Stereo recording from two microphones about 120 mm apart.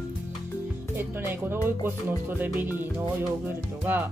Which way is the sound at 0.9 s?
20° right (ahead or behind).